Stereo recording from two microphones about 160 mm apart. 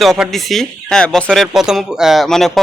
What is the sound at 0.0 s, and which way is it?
Speech, centre (ahead or behind).